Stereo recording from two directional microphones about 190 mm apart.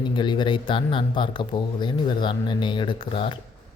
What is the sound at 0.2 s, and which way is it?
Speech, 25° left (ahead or behind).